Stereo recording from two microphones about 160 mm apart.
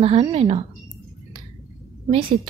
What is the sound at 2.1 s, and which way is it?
Speech, 35° right (ahead or behind).